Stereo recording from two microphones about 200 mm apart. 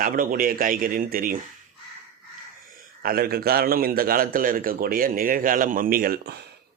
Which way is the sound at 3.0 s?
50° right (ahead or behind).